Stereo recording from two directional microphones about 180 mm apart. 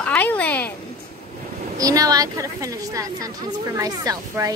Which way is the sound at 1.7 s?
20° right (ahead or behind).